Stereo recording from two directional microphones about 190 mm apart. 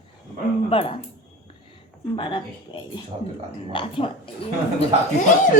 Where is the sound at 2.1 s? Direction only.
25° left (ahead or behind).